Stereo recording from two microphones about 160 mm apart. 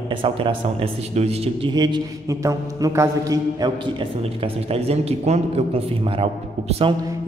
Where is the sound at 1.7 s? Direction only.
25° right (ahead or behind).